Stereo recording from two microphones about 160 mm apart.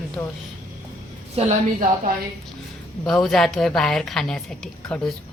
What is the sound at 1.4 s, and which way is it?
Speech, 40° right (ahead or behind).